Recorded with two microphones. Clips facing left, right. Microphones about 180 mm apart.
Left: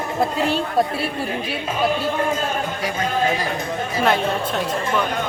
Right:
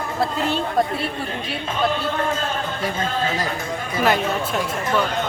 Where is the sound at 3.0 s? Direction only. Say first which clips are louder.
Left 5 dB; 15° left (ahead or behind).